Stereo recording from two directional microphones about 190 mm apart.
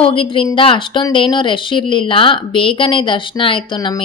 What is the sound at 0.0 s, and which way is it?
A woman's voice, 30° left (ahead or behind).